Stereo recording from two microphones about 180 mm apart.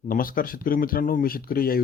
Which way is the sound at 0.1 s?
50° left (ahead or behind).